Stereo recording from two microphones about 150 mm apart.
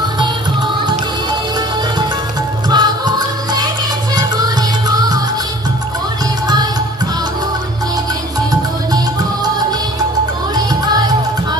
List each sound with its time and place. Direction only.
2.7 s music: 30° right (ahead or behind)
6.4 s music: 25° right (ahead or behind)
8.5 s music: 25° right (ahead or behind)